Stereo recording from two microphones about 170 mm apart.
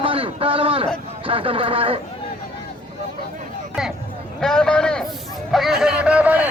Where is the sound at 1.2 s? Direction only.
30° right (ahead or behind).